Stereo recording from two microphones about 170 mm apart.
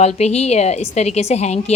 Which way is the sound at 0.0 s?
40° left (ahead or behind).